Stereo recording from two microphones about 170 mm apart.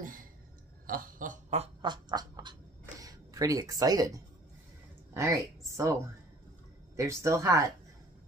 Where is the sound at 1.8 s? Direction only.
25° right (ahead or behind).